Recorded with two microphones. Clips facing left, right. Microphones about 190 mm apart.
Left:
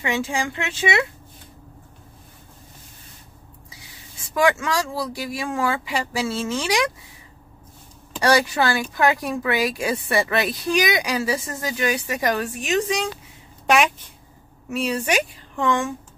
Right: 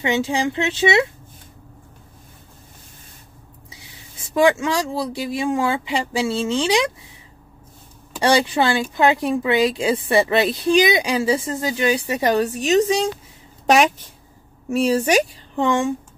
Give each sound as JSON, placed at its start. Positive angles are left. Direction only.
{"t": 0.0, "sound": "a woman's voice", "side_deg": -20}
{"t": 4.3, "sound": "a woman's voice", "side_deg": -25}
{"t": 8.2, "sound": "a woman's voice", "side_deg": -25}
{"t": 14.7, "sound": "a woman's voice", "side_deg": -40}